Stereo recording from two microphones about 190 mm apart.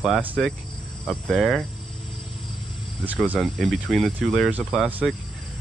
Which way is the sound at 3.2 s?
Centre (ahead or behind).